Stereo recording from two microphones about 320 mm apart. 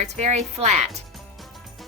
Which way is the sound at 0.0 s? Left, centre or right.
Right.